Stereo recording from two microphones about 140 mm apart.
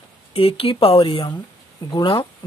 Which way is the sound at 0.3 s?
40° left (ahead or behind).